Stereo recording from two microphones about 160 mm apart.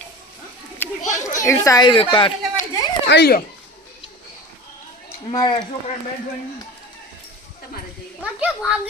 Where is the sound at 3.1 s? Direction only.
85° left.